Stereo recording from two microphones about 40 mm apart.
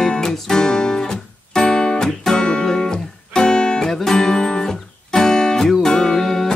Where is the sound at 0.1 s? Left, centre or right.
Centre.